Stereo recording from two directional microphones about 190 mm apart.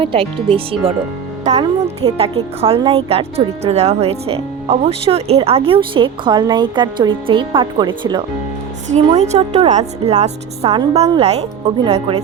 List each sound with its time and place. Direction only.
0.0 s speech: 30° right (ahead or behind)
8.9 s a woman's voice: 35° right (ahead or behind)